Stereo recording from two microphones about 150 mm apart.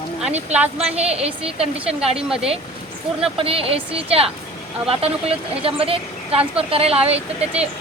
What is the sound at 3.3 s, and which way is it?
Speech, 40° right (ahead or behind).